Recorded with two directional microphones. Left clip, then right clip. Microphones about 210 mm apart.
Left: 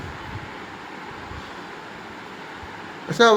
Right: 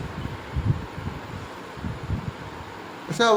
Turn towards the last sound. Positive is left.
turn(degrees=5)  # may be behind; listen again after turning